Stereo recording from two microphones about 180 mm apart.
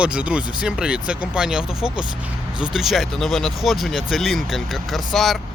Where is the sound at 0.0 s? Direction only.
5° right (ahead or behind).